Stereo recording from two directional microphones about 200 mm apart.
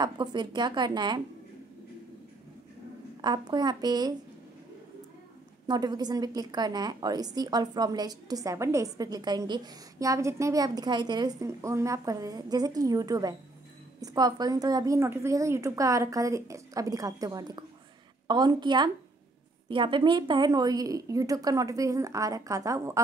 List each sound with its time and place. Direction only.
0.0 s a woman's voice: 20° right (ahead or behind)
3.2 s a woman's voice: 20° right (ahead or behind)
5.7 s a woman's voice: 20° right (ahead or behind)